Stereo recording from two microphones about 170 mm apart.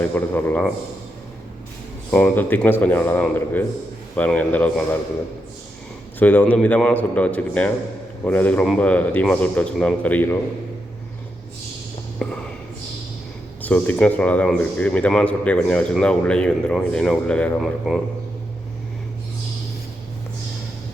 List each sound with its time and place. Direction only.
0.0 s speech: 10° left (ahead or behind)
2.0 s speech: 10° left (ahead or behind)
6.1 s speech: 10° left (ahead or behind)
12.2 s speech: 5° left (ahead or behind)
13.6 s speech: 10° left (ahead or behind)